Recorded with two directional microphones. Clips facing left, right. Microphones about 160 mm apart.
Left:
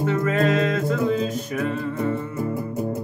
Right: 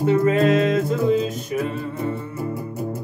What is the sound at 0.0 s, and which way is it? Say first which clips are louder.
Music: right 4 dB; 30° right (ahead or behind).